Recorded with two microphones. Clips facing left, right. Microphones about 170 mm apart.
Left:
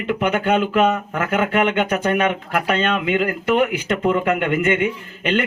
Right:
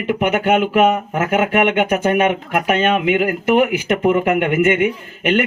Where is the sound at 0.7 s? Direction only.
10° right (ahead or behind).